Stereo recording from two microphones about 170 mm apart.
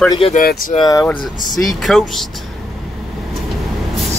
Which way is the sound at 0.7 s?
20° left (ahead or behind).